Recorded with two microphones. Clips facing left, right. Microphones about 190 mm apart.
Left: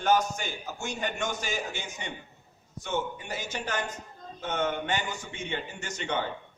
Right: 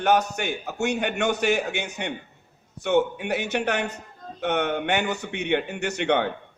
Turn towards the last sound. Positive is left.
turn(degrees=-65)  # may be behind; listen again after turning